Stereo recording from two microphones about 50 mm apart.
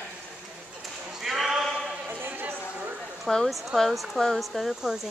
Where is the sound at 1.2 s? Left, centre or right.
Centre.